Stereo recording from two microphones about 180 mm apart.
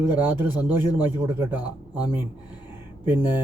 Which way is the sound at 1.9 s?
20° left (ahead or behind).